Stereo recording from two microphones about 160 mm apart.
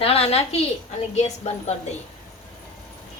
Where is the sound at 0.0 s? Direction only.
40° left (ahead or behind).